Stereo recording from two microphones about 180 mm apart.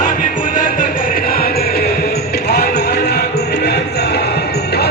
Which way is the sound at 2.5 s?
65° left (ahead or behind).